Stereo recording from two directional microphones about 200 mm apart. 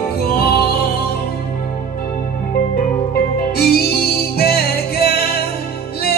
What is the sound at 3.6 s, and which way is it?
Music, 50° left (ahead or behind).